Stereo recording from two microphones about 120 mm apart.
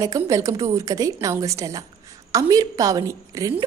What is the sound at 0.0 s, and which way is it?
A woman's voice, 25° right (ahead or behind).